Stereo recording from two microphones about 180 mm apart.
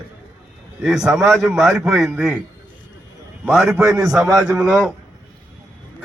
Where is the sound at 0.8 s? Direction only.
5° right (ahead or behind).